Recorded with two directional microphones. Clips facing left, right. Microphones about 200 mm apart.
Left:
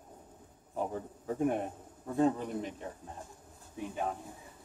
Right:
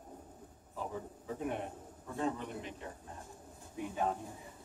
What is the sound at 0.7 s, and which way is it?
A man's voice, 55° left (ahead or behind).